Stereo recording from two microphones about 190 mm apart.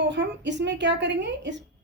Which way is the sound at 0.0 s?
65° right (ahead or behind).